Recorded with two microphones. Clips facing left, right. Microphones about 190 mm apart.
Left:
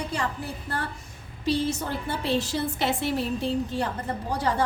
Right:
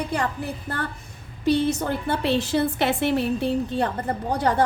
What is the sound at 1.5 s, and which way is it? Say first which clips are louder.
A woman's voice: right 5 dB; 60° right (ahead or behind).